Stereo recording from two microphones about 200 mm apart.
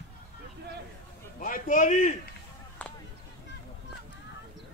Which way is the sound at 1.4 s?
40° left (ahead or behind).